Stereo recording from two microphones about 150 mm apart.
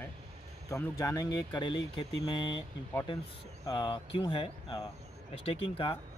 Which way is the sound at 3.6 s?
30° left (ahead or behind).